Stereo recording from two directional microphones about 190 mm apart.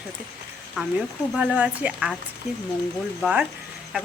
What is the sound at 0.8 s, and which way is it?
A woman's voice, centre (ahead or behind).